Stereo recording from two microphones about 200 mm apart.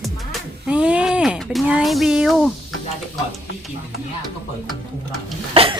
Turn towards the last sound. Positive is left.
turn(degrees=-25)  # may be behind; listen again after turning